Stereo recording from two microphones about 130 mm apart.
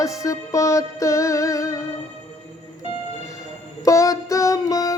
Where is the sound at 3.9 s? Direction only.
25° left (ahead or behind).